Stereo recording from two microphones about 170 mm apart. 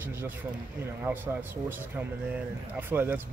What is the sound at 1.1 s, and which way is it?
Speech, 15° right (ahead or behind).